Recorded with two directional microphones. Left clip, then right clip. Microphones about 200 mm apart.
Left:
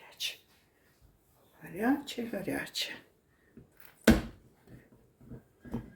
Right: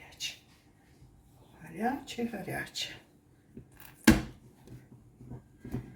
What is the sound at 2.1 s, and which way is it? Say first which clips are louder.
Speech: left 1 dB; 45° left (ahead or behind).